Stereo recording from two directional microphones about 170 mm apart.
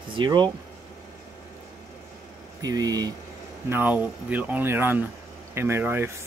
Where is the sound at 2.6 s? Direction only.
20° right (ahead or behind).